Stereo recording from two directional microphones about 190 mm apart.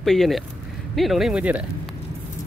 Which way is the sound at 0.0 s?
Centre (ahead or behind).